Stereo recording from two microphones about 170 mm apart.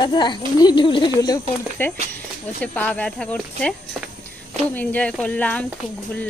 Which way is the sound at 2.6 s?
10° left (ahead or behind).